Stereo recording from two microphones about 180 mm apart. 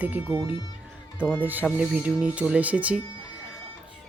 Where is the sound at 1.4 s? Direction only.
10° right (ahead or behind).